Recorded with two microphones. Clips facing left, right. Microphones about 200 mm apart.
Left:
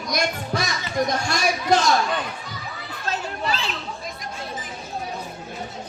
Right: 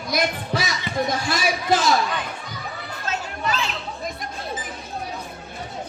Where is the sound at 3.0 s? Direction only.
35° left (ahead or behind).